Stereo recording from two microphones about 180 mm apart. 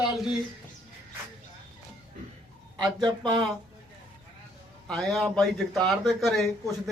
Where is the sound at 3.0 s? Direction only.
25° right (ahead or behind).